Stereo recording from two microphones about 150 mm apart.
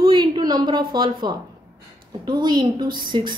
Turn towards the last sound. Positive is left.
turn(degrees=-30)  # may be behind; listen again after turning